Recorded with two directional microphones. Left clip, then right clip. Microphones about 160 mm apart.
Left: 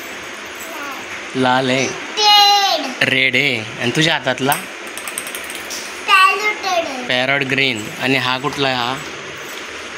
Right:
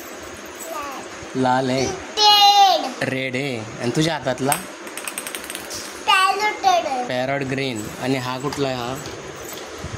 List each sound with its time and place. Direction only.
1.4 s speech: 10° right (ahead or behind)
2.1 s a sound: 55° right (ahead or behind)
3.0 s speech: 10° right (ahead or behind)
6.0 s child singing: 50° right (ahead or behind)
7.1 s speech: 15° right (ahead or behind)